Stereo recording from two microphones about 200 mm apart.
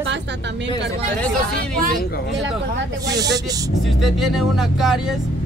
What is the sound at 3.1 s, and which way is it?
Speech, 20° right (ahead or behind).